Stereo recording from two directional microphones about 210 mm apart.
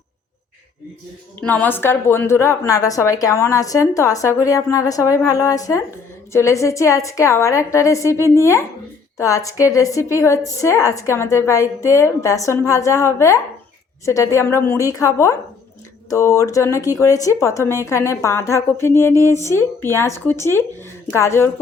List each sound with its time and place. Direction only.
1.4 s a woman's voice: 5° left (ahead or behind)